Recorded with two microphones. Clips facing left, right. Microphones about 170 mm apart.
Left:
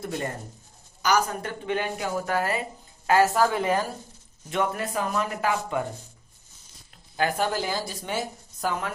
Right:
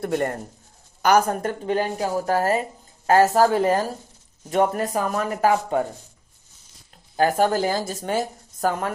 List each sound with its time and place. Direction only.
0.0 s speech: 60° right (ahead or behind); by 5.8 s 40° right (ahead or behind)
6.9 s speech: 40° right (ahead or behind)